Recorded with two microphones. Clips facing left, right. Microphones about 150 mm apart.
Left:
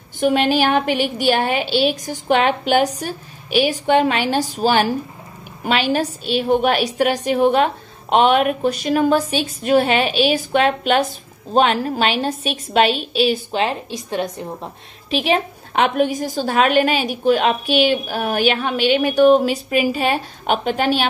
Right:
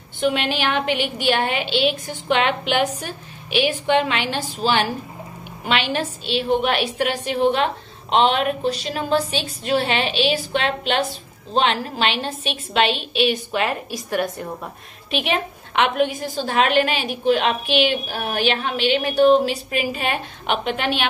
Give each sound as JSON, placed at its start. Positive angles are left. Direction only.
{"t": 0.2, "sound": "a woman's voice", "side_deg": 45}
{"t": 15.0, "sound": "a woman's voice", "side_deg": 35}